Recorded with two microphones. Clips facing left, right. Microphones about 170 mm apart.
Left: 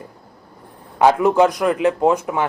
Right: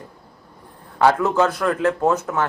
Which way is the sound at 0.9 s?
15° left (ahead or behind).